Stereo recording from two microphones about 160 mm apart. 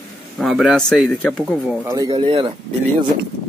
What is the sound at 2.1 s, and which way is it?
Speech, 35° right (ahead or behind).